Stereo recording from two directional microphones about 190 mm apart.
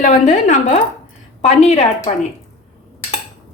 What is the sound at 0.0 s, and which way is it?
A woman's voice, 40° left (ahead or behind).